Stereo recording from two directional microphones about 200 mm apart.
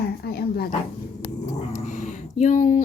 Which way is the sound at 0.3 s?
50° left (ahead or behind).